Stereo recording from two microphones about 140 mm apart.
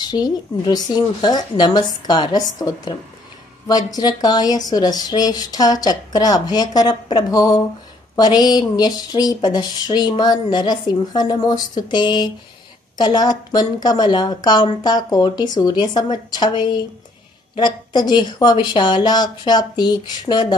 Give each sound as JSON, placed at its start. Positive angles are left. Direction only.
{"t": 0.0, "sound": "a woman's voice", "side_deg": 30}